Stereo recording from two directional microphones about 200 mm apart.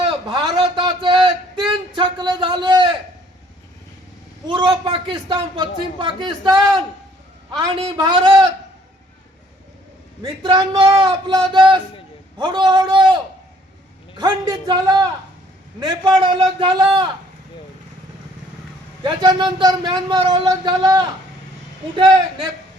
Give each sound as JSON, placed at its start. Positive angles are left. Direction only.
{"t": 0.0, "sound": "a sound", "side_deg": -20}
{"t": 4.4, "sound": "speech", "side_deg": -25}
{"t": 10.2, "sound": "speech", "side_deg": -20}
{"t": 14.2, "sound": "speech", "side_deg": -20}
{"t": 19.0, "sound": "speech", "side_deg": -20}